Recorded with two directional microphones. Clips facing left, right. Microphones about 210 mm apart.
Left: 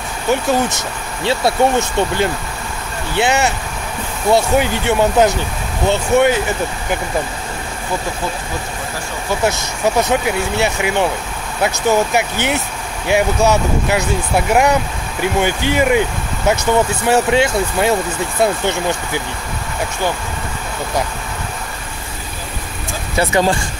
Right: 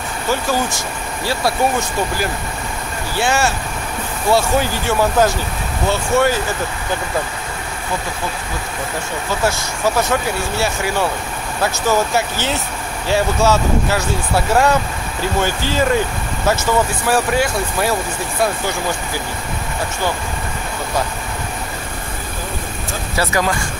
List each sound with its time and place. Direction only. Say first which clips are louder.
0.3 s speech: left 4 dB; 20° left (ahead or behind)
9.4 s speech: left 2 dB; 20° left (ahead or behind)
23.1 s speech: left 4 dB; 25° left (ahead or behind)